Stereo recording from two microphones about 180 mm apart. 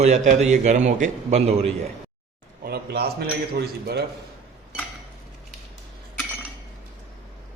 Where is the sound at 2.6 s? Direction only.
60° right (ahead or behind).